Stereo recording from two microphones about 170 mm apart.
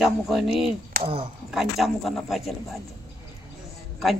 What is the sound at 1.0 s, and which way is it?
Speech, 30° right (ahead or behind).